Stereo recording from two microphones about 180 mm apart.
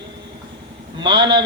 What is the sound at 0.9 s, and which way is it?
Speech, 25° right (ahead or behind).